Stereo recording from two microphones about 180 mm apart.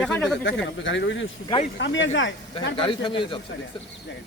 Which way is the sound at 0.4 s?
85° left.